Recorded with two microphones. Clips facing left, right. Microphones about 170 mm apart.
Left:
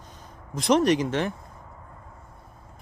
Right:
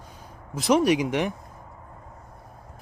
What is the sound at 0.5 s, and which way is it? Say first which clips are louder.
Speech: even; 10° right (ahead or behind).